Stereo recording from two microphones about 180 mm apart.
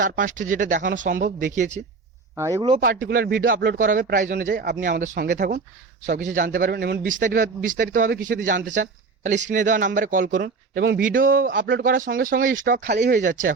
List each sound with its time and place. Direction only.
0.0 s a man's voice: 45° right (ahead or behind)
2.3 s speech: 15° right (ahead or behind)
3.1 s a man's voice: 55° right (ahead or behind)
3.8 s a man's voice: 50° right (ahead or behind)
11.5 s speech: 90° right
11.8 s a man's voice: 50° right (ahead or behind)